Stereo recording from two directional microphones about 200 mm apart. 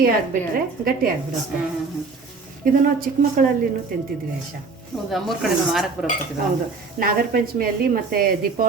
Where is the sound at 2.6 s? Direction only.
45° right (ahead or behind).